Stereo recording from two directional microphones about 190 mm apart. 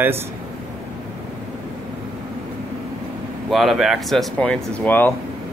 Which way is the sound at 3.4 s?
Centre (ahead or behind).